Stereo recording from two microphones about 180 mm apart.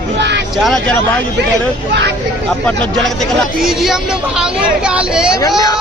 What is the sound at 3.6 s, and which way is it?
Speech, centre (ahead or behind).